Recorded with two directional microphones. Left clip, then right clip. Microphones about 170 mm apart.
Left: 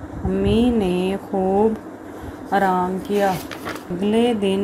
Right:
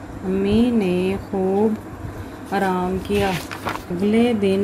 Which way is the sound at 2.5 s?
10° left (ahead or behind).